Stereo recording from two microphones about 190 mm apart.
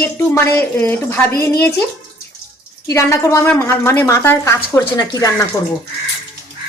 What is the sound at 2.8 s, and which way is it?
A woman's voice, 15° left (ahead or behind).